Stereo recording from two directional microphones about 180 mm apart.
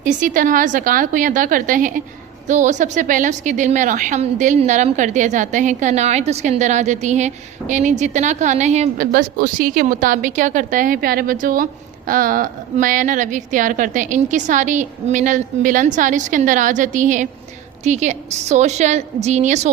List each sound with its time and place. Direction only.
0.0 s a woman's voice: 45° right (ahead or behind)
9.1 s a woman's voice: 50° right (ahead or behind)